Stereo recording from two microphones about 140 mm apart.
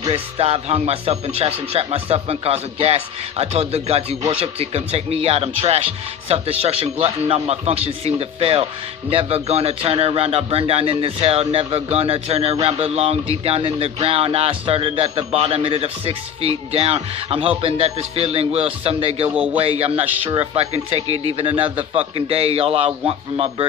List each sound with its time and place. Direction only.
0.1 s speech: 45° right (ahead or behind)
19.3 s a man's voice: 10° right (ahead or behind)
19.6 s speech: 45° right (ahead or behind)